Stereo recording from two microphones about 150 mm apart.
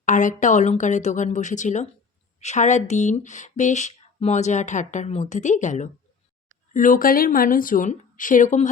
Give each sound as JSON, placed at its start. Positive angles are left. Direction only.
{"t": 0.0, "sound": "speech", "side_deg": 55}